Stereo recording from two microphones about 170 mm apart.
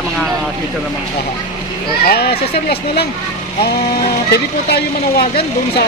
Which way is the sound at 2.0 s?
65° left (ahead or behind).